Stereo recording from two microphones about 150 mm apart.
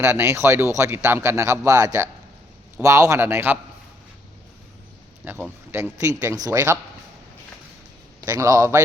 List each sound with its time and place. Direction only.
0.0 s a man's voice: 20° right (ahead or behind)
5.2 s a man's voice: 15° right (ahead or behind)
6.3 s speech: 25° right (ahead or behind)
8.2 s speech: 20° right (ahead or behind)